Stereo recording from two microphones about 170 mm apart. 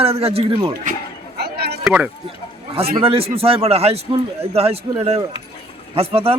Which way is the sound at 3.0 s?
35° right (ahead or behind).